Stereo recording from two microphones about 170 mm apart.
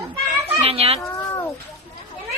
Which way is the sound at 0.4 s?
35° right (ahead or behind).